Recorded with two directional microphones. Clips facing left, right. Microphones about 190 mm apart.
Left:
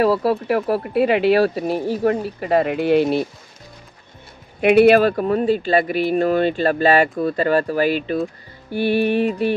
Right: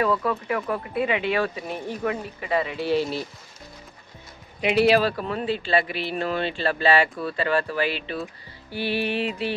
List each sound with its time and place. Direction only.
0.0 s speech: 35° left (ahead or behind); by 3.3 s 60° left (ahead or behind)
4.6 s speech: 55° left (ahead or behind)